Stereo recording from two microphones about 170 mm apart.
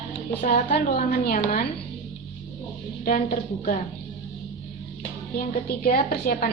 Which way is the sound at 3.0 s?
55° left (ahead or behind).